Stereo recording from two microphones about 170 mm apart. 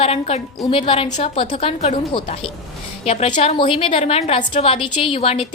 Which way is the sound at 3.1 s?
40° left (ahead or behind).